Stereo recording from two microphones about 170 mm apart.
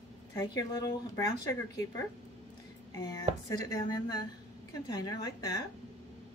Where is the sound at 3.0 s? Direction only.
20° left (ahead or behind).